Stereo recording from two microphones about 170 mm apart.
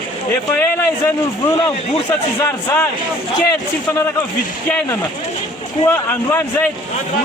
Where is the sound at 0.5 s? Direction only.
10° left (ahead or behind).